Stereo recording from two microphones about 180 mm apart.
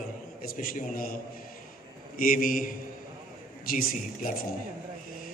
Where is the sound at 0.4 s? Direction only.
50° left (ahead or behind).